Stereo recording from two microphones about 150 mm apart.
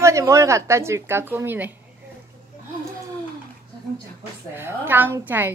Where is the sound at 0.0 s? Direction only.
20° right (ahead or behind).